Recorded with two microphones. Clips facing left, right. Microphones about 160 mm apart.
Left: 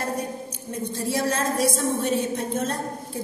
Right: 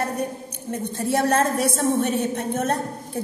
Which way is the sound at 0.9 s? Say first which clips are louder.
Right 5 dB; 60° right (ahead or behind).